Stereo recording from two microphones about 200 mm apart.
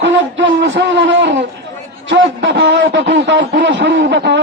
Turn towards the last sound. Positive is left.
turn(degrees=-60)  # may be behind; listen again after turning